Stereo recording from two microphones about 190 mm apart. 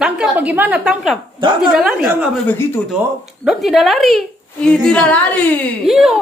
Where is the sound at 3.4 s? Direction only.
Centre (ahead or behind).